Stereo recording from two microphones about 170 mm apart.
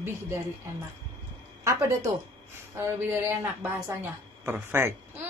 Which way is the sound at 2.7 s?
15° right (ahead or behind).